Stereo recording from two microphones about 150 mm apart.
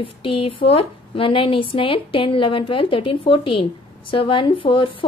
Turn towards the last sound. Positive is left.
turn(degrees=35)  # may be behind; listen again after turning